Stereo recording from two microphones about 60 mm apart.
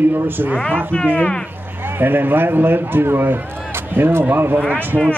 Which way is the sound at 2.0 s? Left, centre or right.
Right.